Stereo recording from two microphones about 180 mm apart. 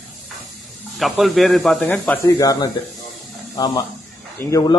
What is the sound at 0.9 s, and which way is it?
A man's voice, centre (ahead or behind).